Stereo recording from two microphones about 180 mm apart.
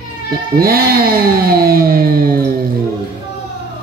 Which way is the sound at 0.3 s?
55° right (ahead or behind).